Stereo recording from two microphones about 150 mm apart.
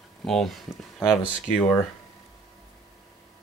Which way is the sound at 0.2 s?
Centre (ahead or behind).